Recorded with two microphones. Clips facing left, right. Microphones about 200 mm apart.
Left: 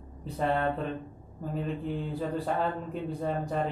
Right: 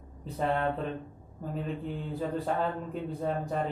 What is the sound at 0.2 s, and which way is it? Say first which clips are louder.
Speech: left 1 dB; centre (ahead or behind).